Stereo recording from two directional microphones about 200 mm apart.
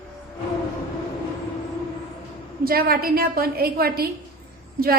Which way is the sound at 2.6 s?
45° right (ahead or behind).